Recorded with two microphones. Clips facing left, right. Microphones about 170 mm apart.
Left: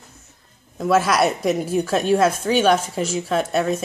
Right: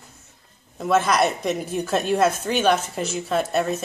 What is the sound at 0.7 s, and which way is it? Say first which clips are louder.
A woman's voice: left 2 dB; centre (ahead or behind).